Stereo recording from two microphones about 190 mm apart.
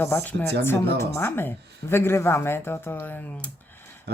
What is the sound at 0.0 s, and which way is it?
Speech, 10° left (ahead or behind).